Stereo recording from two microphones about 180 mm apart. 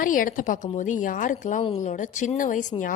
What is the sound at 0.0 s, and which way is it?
A woman's voice, 50° left (ahead or behind).